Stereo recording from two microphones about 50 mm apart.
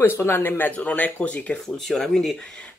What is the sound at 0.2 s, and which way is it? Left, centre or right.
Speech, left.